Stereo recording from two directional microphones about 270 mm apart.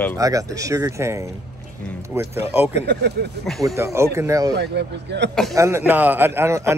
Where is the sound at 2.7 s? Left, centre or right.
Right.